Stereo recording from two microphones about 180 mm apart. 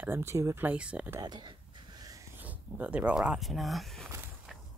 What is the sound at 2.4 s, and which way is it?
Speech, 10° right (ahead or behind).